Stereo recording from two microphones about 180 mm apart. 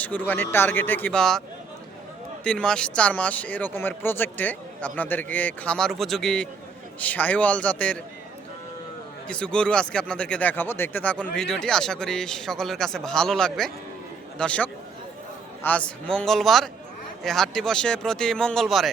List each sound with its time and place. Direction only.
0.0 s speech: 10° left (ahead or behind)
2.4 s speech: 5° left (ahead or behind)
9.2 s speech: 5° left (ahead or behind)